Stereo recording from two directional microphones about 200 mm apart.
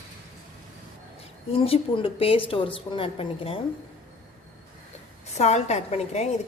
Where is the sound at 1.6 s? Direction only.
25° left (ahead or behind).